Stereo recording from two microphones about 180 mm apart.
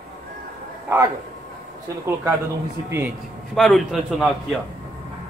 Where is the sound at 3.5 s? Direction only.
Centre (ahead or behind).